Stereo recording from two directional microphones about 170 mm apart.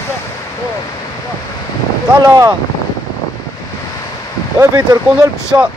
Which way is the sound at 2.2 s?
20° right (ahead or behind).